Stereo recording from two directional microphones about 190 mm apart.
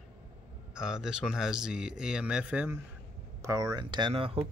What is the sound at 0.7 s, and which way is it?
Speech, 5° right (ahead or behind).